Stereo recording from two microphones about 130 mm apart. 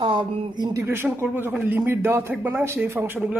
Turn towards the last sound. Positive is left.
turn(degrees=-15)  # may be behind; listen again after turning